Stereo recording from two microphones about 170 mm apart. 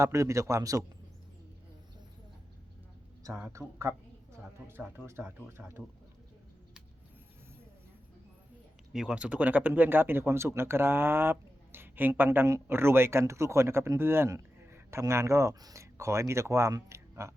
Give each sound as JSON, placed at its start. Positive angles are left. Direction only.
{"t": 0.0, "sound": "speech", "side_deg": -20}
{"t": 3.2, "sound": "a woman's voice", "side_deg": -15}
{"t": 8.9, "sound": "speech", "side_deg": -5}